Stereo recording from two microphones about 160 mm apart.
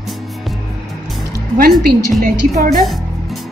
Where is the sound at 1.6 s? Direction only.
70° right (ahead or behind).